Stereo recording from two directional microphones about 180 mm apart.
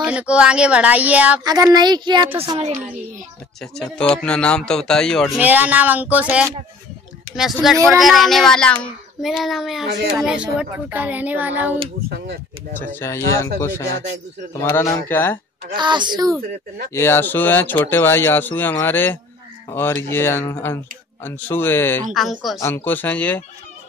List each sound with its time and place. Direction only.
0.0 s speech: 5° right (ahead or behind)
1.4 s a woman's voice: 20° right (ahead or behind)
3.7 s speech: 5° left (ahead or behind)
5.4 s speech: 10° right (ahead or behind)
7.6 s speech: centre (ahead or behind)
12.8 s speech: 15° left (ahead or behind)
15.7 s a woman's voice: 25° right (ahead or behind)
16.9 s speech: 15° left (ahead or behind)